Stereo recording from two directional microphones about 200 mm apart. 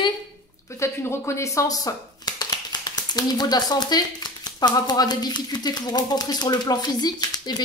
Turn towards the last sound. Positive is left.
turn(degrees=20)  # may be behind; listen again after turning